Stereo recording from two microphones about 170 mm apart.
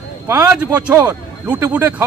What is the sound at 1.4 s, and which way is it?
Speech, 10° right (ahead or behind).